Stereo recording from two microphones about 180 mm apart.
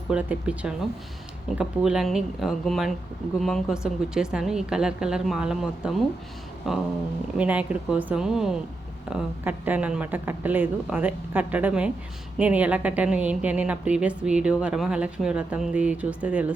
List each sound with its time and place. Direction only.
0.1 s a woman's voice: 5° right (ahead or behind)